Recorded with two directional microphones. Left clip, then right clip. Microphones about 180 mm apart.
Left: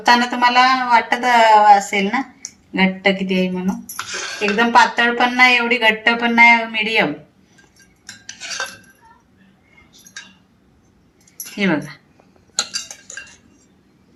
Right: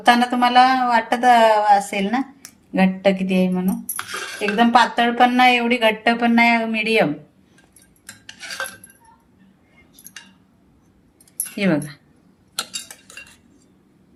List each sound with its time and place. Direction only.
0.0 s speech: 50° right (ahead or behind)
11.5 s speech: 55° right (ahead or behind)